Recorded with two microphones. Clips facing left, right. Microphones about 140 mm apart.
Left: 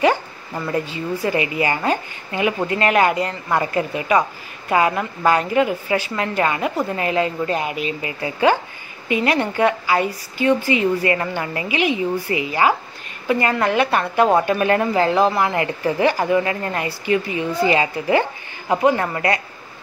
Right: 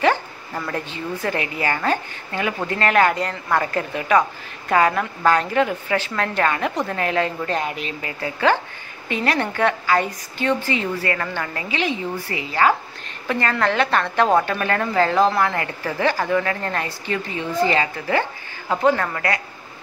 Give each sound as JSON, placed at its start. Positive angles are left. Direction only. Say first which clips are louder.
{"t": 0.0, "sound": "speech", "louder": "left 2 dB", "side_deg": 10}